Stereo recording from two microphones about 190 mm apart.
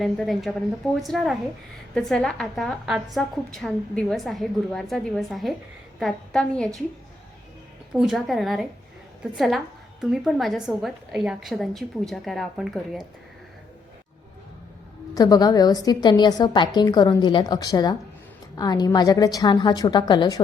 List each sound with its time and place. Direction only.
0.0 s a woman's voice: centre (ahead or behind)
7.9 s a woman's voice: centre (ahead or behind)
10.0 s a woman's voice: centre (ahead or behind)
15.1 s a woman's voice: 20° left (ahead or behind)